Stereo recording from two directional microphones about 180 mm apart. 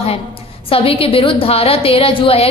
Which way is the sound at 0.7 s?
30° left (ahead or behind).